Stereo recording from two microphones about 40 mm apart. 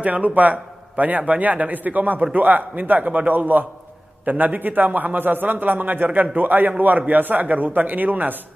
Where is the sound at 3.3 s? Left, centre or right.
Right.